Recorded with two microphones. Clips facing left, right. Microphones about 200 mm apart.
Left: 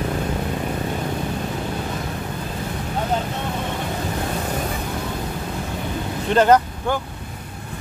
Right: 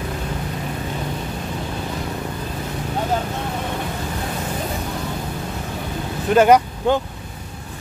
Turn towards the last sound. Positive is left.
turn(degrees=-10)  # may be behind; listen again after turning